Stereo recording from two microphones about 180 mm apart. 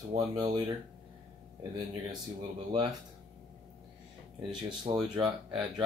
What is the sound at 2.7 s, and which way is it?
Speech, 25° right (ahead or behind).